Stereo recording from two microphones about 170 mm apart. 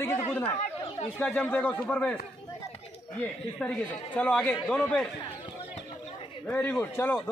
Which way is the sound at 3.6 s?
10° left (ahead or behind).